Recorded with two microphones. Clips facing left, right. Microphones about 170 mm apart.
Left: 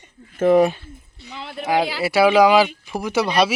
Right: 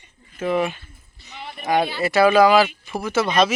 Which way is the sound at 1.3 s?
90° left.